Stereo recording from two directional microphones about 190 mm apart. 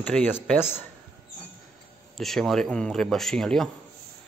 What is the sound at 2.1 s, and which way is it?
A man's voice, centre (ahead or behind).